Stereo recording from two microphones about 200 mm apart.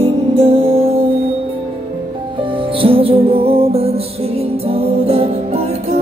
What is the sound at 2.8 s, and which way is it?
Music, 25° right (ahead or behind).